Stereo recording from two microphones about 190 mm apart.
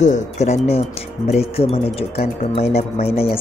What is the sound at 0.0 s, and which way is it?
Speech, 40° left (ahead or behind).